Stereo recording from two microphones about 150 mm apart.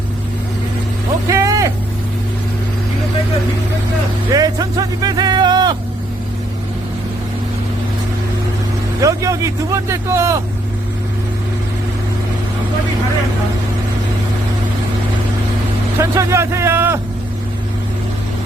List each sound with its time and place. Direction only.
1.3 s vehicle: 20° right (ahead or behind)
4.3 s a sound: 25° right (ahead or behind)
9.0 s speech: 20° right (ahead or behind)
16.0 s speech: 20° right (ahead or behind)